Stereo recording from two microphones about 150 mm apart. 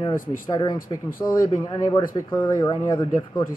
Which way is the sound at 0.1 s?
65° left (ahead or behind).